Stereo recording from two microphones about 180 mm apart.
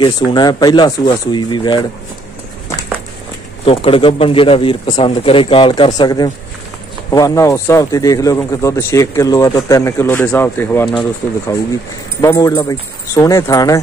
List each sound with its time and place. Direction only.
0.0 s speech: 25° left (ahead or behind)
3.6 s speech: 30° left (ahead or behind); by 10.9 s 10° left (ahead or behind)
12.2 s speech: 15° left (ahead or behind)